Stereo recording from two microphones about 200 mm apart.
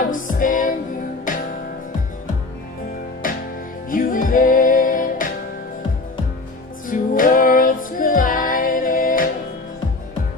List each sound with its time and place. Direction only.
0.1 s music: 40° left (ahead or behind)
3.2 s music: 45° left (ahead or behind)
6.9 s female singing: 45° left (ahead or behind)